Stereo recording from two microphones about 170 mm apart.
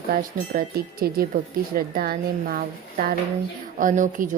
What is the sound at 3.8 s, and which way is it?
Speech, 50° right (ahead or behind).